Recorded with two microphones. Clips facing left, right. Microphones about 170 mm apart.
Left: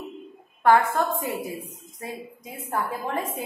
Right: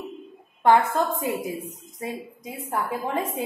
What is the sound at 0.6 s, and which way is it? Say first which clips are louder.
Speech: even; 20° right (ahead or behind).